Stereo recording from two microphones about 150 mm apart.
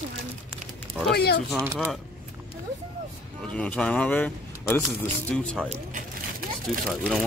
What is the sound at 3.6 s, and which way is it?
Speech, 5° left (ahead or behind).